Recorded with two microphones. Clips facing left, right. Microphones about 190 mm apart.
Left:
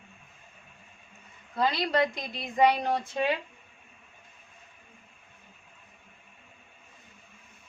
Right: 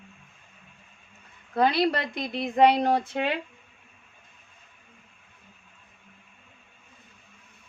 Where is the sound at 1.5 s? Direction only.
60° right (ahead or behind).